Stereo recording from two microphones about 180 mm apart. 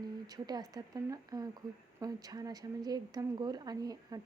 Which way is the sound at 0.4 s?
20° right (ahead or behind).